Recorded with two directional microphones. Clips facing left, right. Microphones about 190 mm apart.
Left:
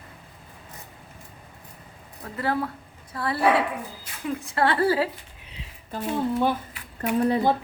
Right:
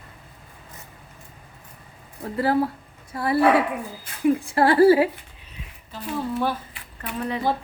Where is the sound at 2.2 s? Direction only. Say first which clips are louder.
Right 5 dB; 30° right (ahead or behind).